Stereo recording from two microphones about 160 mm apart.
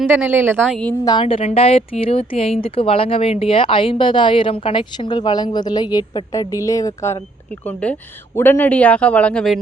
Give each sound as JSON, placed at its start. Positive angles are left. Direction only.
{"t": 0.1, "sound": "speech", "side_deg": -10}
{"t": 0.7, "sound": "speech", "side_deg": 5}
{"t": 1.0, "sound": "a woman's voice", "side_deg": 30}